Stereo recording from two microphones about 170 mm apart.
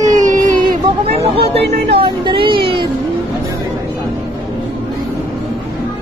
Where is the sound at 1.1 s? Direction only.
35° right (ahead or behind).